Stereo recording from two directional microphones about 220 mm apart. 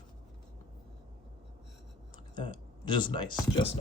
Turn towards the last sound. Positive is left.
turn(degrees=20)  # may be behind; listen again after turning